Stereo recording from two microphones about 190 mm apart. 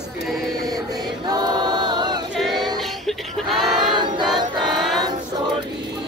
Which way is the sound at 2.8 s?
Centre (ahead or behind).